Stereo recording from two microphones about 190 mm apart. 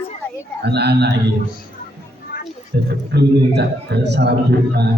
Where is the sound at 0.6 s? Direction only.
60° right (ahead or behind).